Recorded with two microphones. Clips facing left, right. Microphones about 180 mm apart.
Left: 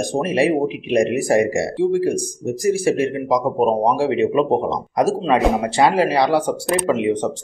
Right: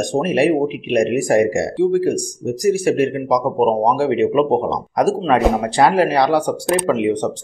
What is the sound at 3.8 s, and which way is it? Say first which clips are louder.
Speech: right 1 dB; centre (ahead or behind).